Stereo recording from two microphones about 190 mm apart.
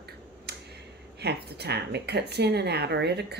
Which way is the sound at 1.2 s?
60° right (ahead or behind).